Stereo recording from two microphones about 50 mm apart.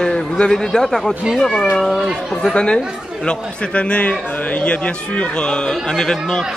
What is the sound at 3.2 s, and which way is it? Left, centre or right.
A man's voice, left.